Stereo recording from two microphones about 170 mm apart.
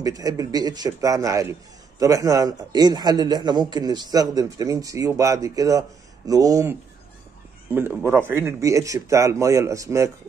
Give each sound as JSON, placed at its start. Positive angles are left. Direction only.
{"t": 0.0, "sound": "a man's voice", "side_deg": -20}